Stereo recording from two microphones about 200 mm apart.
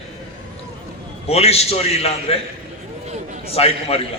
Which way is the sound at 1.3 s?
30° left (ahead or behind).